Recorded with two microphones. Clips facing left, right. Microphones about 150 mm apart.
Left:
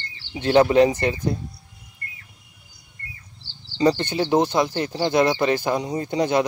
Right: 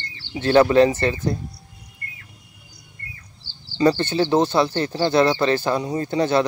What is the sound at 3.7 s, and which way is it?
Speech, 20° left (ahead or behind).